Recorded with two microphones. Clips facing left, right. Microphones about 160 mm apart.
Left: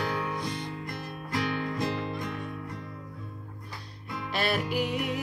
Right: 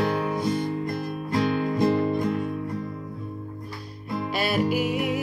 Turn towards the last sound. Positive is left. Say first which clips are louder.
# right 5 dB
turn(degrees=-5)  # may be behind; listen again after turning